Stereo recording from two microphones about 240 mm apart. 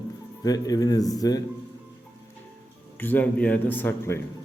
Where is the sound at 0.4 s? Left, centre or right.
Centre.